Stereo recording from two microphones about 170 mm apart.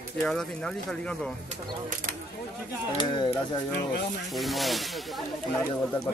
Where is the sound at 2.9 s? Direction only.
30° left (ahead or behind).